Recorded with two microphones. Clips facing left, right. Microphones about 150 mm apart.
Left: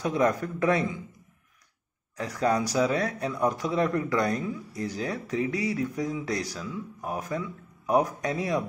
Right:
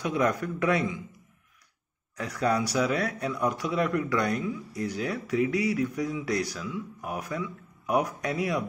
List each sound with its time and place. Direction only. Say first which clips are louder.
0.0 s speech: left 2 dB; 35° left (ahead or behind)
2.1 s speech: left 1 dB; 30° left (ahead or behind)